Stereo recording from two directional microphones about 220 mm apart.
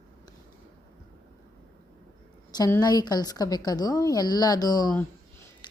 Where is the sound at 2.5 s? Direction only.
15° left (ahead or behind).